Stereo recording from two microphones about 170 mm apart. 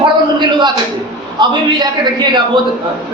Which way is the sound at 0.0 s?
25° right (ahead or behind).